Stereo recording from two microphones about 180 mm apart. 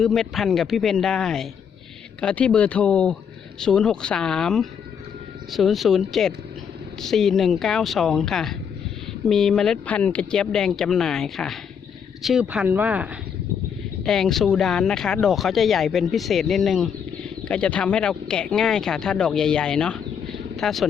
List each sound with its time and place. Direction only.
0.0 s speech: centre (ahead or behind)
14.0 s speech: centre (ahead or behind)